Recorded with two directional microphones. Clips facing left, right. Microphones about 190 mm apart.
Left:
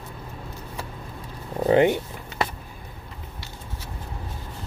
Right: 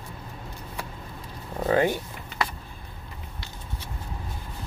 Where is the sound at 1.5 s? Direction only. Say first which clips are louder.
Left 5 dB; 20° left (ahead or behind).